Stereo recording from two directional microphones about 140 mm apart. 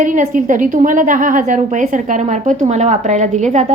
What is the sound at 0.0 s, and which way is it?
A woman's voice, 65° right (ahead or behind).